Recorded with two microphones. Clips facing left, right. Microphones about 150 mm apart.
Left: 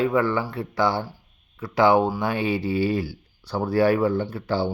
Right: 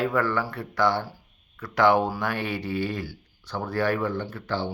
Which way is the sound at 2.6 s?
5° left (ahead or behind).